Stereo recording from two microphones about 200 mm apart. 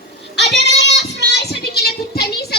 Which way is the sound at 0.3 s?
55° left (ahead or behind).